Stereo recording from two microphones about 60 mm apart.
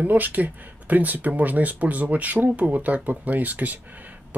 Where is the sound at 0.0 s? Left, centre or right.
Right.